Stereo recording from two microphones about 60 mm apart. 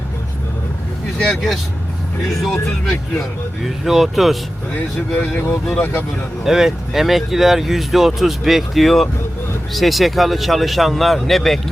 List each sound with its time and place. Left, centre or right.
1.3 s speech: centre
2.8 s speech: centre
4.7 s speech: left
5.8 s speech: left
6.4 s speech: centre